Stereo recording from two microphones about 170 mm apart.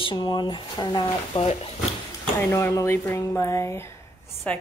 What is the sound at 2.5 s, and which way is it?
Speech, 15° left (ahead or behind).